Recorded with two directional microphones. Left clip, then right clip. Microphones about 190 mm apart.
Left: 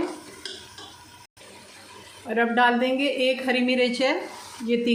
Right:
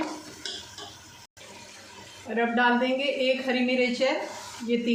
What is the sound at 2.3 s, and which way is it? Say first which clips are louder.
A woman's voice: left 3 dB; 40° left (ahead or behind).